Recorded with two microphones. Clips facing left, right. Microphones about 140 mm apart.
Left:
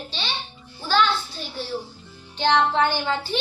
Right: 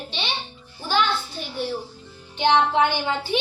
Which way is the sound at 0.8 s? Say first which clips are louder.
Left 1 dB; 15° right (ahead or behind).